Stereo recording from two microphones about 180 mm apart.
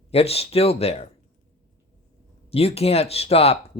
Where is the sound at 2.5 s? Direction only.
35° left (ahead or behind).